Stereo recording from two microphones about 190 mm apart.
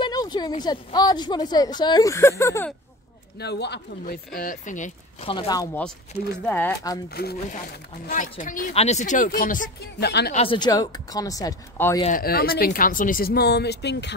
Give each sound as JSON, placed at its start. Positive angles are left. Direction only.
{"t": 0.0, "sound": "a woman's voice", "side_deg": 20}
{"t": 3.3, "sound": "speech", "side_deg": 60}
{"t": 5.3, "sound": "a woman's voice", "side_deg": 25}
{"t": 6.4, "sound": "speech", "side_deg": 10}
{"t": 7.2, "sound": "speech", "side_deg": 55}
{"t": 8.1, "sound": "speech", "side_deg": 45}
{"t": 10.3, "sound": "a woman's voice", "side_deg": 30}
{"t": 12.1, "sound": "speech", "side_deg": 50}